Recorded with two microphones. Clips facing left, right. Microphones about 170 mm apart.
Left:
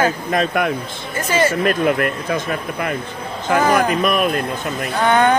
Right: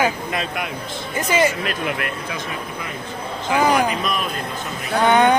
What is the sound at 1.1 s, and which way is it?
Speech, 15° right (ahead or behind).